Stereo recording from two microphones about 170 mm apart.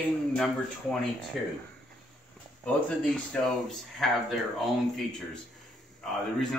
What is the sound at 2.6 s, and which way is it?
Speech, centre (ahead or behind).